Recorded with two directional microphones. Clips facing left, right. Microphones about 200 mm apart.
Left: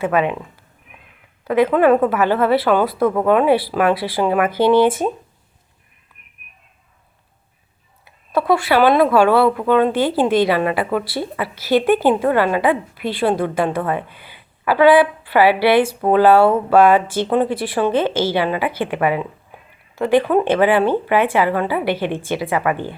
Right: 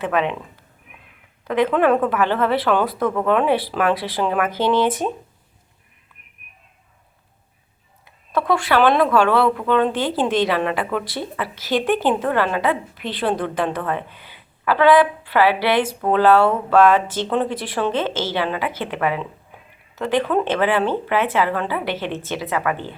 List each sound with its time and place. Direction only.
0.0 s a woman's voice: 5° left (ahead or behind)
1.5 s a woman's voice: 5° left (ahead or behind)
8.0 s a woman's voice: 10° left (ahead or behind)